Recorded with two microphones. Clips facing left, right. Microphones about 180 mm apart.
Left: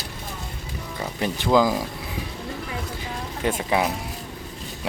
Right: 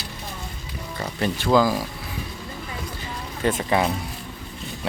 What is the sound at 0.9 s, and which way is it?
Speech, 15° left (ahead or behind).